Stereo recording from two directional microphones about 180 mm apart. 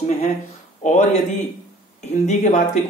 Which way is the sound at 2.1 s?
40° left (ahead or behind).